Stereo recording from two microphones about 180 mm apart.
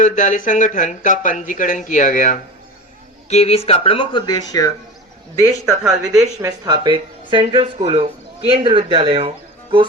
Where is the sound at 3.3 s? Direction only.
35° left (ahead or behind).